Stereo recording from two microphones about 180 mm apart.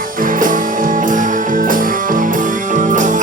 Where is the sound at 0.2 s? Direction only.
50° right (ahead or behind).